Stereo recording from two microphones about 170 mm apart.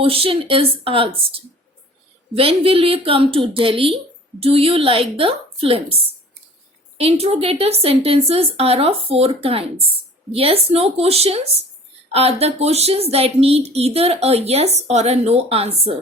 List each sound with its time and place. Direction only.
0.0 s a woman's voice: 35° right (ahead or behind)
2.3 s a woman's voice: 35° right (ahead or behind)